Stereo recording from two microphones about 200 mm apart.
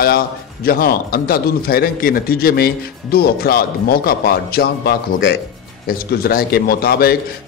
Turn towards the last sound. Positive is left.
turn(degrees=50)  # may be behind; listen again after turning